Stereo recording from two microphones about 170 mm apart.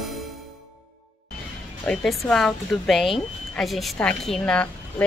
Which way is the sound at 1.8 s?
Centre (ahead or behind).